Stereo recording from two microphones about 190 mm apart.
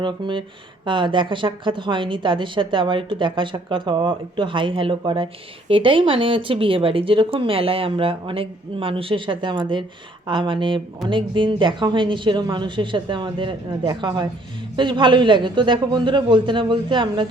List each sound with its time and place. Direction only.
0.0 s a woman's voice: 25° right (ahead or behind)